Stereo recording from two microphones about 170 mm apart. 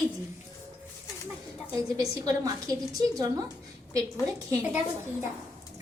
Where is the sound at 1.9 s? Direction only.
20° right (ahead or behind).